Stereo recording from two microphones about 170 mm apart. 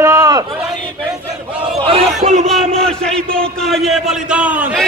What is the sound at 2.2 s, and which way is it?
Speech, 40° right (ahead or behind).